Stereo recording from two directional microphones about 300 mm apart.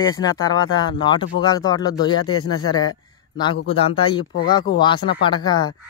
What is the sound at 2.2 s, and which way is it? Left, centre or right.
Speech, left.